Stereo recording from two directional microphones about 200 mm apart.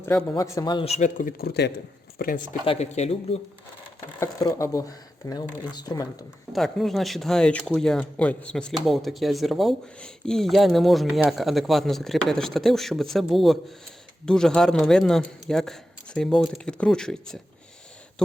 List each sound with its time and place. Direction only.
0.0 s a man's voice: 5° left (ahead or behind); by 2.6 s 45° left (ahead or behind)
2.6 s a man's voice: 35° left (ahead or behind)
4.2 s speech: 15° left (ahead or behind)
6.5 s speech: centre (ahead or behind)